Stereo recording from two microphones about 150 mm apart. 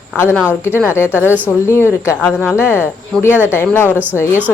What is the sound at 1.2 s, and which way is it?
Speech, 10° right (ahead or behind).